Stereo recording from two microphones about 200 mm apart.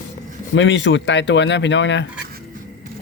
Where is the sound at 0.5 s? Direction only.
70° left (ahead or behind).